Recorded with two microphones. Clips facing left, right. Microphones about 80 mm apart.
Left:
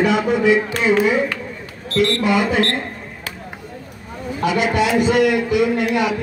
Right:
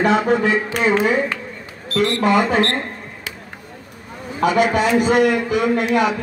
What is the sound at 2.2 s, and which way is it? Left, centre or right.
Speech, right.